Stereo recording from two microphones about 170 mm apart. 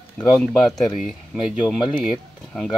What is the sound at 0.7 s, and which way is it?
Speech, 20° left (ahead or behind).